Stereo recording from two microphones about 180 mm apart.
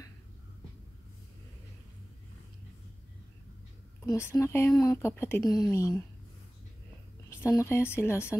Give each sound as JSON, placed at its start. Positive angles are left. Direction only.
{"t": 4.0, "sound": "speech", "side_deg": 15}
{"t": 7.2, "sound": "speech", "side_deg": 15}